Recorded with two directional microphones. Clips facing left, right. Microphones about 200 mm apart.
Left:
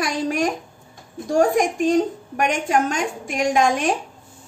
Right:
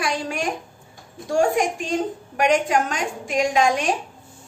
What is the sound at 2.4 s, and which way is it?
A woman's voice, 45° left (ahead or behind).